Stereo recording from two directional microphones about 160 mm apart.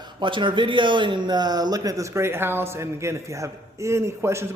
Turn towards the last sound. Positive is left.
turn(degrees=-15)  # may be behind; listen again after turning